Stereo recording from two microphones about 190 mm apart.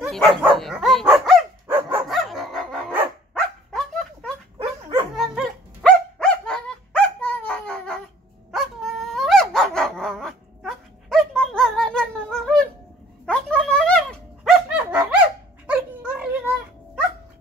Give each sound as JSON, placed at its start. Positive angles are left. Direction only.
{"t": 0.4, "sound": "dog", "side_deg": 0}
{"t": 4.6, "sound": "dog", "side_deg": -30}
{"t": 5.1, "sound": "dog", "side_deg": 0}